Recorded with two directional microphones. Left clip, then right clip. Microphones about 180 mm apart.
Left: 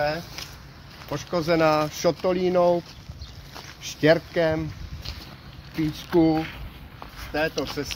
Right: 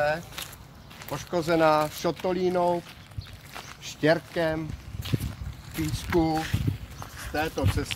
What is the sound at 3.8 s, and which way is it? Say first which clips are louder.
Speech: left 4 dB; 55° left (ahead or behind).